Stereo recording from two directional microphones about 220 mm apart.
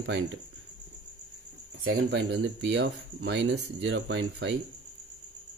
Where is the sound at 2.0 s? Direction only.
50° right (ahead or behind).